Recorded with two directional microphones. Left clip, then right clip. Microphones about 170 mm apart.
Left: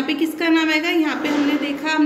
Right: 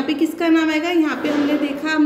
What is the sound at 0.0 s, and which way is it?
A woman's voice, 40° right (ahead or behind).